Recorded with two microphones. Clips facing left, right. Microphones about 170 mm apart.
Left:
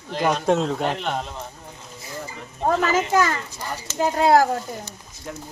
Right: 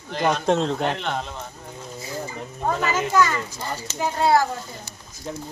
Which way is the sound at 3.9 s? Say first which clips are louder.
Left 3 dB; 45° left (ahead or behind).